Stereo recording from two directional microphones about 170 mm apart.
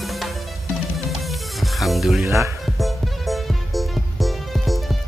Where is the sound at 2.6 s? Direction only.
Centre (ahead or behind).